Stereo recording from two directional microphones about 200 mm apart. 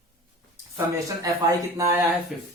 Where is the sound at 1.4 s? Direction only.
15° right (ahead or behind).